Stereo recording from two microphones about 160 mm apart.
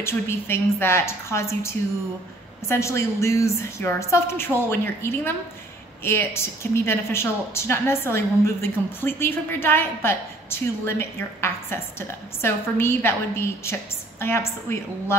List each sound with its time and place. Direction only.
0.0 s speech: 15° left (ahead or behind)